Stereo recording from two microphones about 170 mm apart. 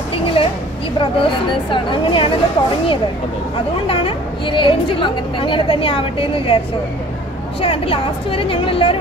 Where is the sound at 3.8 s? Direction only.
30° left (ahead or behind).